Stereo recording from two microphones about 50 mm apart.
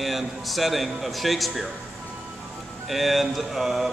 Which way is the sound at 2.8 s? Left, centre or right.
Centre.